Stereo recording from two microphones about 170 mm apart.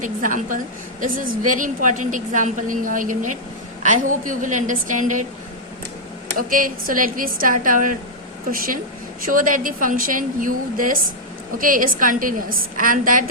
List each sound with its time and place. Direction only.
0.0 s a woman's voice: 50° right (ahead or behind)
6.3 s a woman's voice: 55° right (ahead or behind)